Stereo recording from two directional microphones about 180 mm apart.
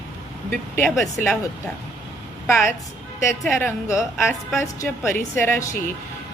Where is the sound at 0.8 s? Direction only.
Centre (ahead or behind).